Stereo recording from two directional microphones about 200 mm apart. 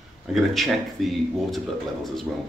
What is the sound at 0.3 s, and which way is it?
Speech, centre (ahead or behind).